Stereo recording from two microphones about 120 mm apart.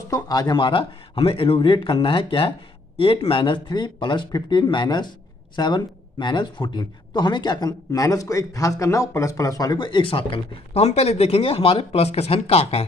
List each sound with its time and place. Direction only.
0.1 s speech: 35° left (ahead or behind); by 12.8 s 55° left (ahead or behind)